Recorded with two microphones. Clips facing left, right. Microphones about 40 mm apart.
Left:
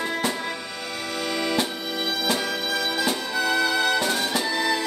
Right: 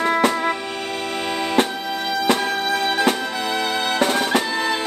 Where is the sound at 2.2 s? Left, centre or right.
Right.